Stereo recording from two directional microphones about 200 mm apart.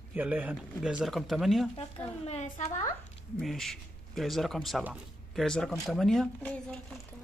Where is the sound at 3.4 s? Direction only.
Centre (ahead or behind).